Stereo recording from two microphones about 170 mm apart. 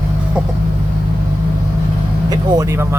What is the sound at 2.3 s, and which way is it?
Speech, 20° right (ahead or behind).